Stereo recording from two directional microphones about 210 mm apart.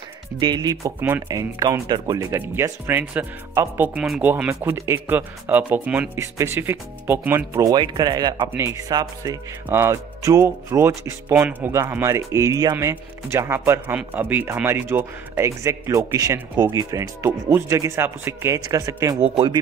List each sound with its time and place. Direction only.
0.4 s speech: 20° right (ahead or behind)
19.2 s speech: 25° right (ahead or behind)